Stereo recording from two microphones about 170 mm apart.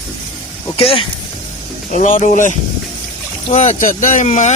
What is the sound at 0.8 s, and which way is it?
Speech, 30° left (ahead or behind).